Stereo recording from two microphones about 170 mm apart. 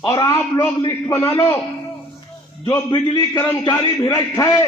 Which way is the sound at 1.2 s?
30° left (ahead or behind).